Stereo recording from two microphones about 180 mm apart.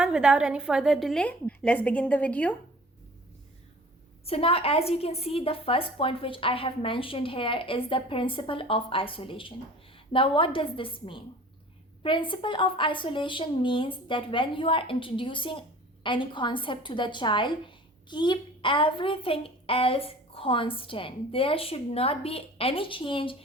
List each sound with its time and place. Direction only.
0.0 s a woman's voice: 5° right (ahead or behind)
4.3 s a woman's voice: 30° left (ahead or behind)